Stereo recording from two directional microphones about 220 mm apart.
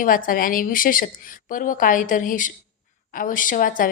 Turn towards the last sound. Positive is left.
turn(degrees=40)  # may be behind; listen again after turning